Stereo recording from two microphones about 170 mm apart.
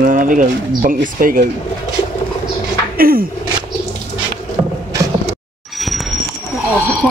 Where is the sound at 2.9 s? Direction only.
60° right (ahead or behind).